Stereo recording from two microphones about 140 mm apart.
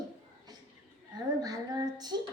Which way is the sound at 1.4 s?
30° right (ahead or behind).